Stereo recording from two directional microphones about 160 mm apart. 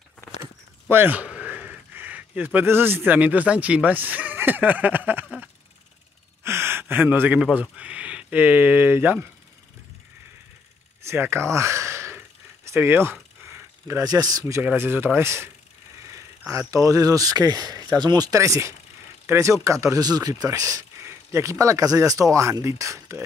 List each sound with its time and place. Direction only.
0.4 s a sound: 15° right (ahead or behind)
6.4 s gasp: 15° right (ahead or behind)
7.7 s speech: 10° right (ahead or behind)
11.1 s a sound: 15° right (ahead or behind)
12.6 s speech: 15° right (ahead or behind)
14.6 s speech: 10° right (ahead or behind)